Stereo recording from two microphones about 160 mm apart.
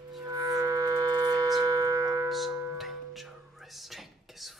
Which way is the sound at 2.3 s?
Centre (ahead or behind).